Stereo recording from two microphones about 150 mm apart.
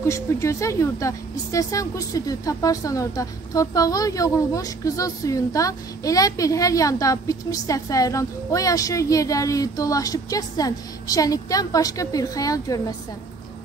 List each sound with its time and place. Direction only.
0.0 s speech: 20° left (ahead or behind)